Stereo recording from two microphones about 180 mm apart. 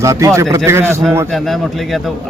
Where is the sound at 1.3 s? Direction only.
Centre (ahead or behind).